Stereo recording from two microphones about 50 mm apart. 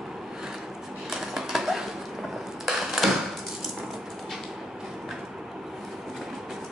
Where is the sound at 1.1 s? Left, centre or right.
Centre.